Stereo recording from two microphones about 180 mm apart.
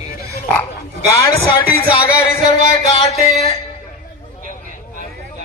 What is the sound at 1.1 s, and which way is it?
Speech, 15° left (ahead or behind).